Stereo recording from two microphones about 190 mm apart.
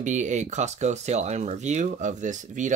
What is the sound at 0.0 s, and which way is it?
Speech, 40° right (ahead or behind).